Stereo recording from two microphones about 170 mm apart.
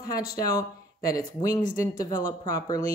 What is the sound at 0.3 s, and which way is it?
Speech, 20° left (ahead or behind).